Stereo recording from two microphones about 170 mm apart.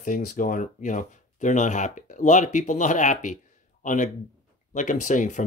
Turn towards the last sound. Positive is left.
turn(degrees=50)  # may be behind; listen again after turning